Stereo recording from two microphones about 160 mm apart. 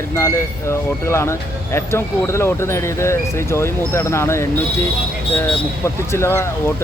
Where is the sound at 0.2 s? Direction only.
15° left (ahead or behind).